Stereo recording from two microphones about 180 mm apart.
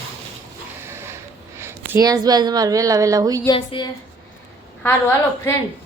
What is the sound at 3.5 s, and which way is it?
Speech, 25° left (ahead or behind).